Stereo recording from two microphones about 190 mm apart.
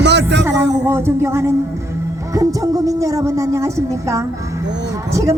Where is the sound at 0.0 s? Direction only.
65° right (ahead or behind).